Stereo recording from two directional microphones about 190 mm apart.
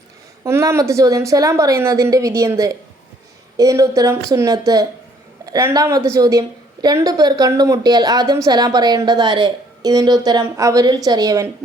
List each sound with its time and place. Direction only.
0.4 s a woman's voice: 15° right (ahead or behind)